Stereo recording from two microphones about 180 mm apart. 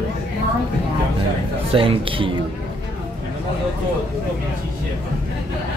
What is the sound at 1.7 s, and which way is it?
Speech, 30° right (ahead or behind).